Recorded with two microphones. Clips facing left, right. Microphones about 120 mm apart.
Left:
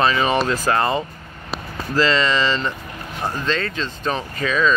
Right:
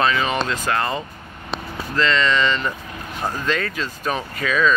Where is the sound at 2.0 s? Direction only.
35° left (ahead or behind).